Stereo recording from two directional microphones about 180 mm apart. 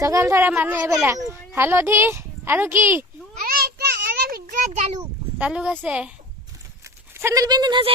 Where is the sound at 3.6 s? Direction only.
60° right (ahead or behind).